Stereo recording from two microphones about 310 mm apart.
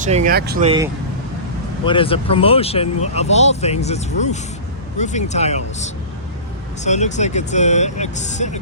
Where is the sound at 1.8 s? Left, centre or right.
Centre.